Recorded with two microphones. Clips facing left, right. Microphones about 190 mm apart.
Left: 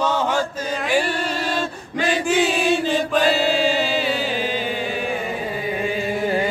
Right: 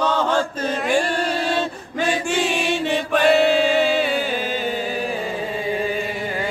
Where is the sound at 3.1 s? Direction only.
60° right (ahead or behind).